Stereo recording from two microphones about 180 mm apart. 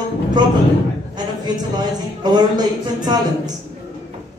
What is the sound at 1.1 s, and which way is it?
Speech, 25° right (ahead or behind).